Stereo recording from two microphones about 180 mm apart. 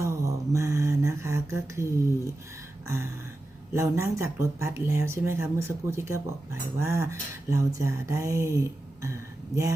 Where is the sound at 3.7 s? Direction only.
15° right (ahead or behind).